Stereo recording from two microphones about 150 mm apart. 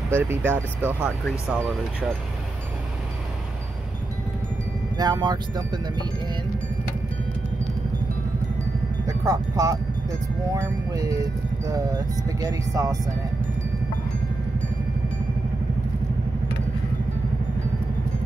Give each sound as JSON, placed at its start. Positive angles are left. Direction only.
{"t": 0.1, "sound": "speech", "side_deg": -15}
{"t": 4.9, "sound": "speech", "side_deg": -30}
{"t": 9.0, "sound": "speech", "side_deg": -25}